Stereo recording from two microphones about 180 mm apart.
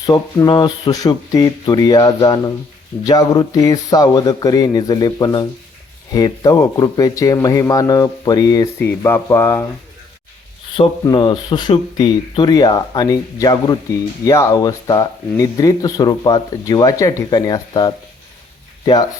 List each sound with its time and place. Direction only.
0.0 s speech: 20° left (ahead or behind)
10.8 s speech: 25° left (ahead or behind)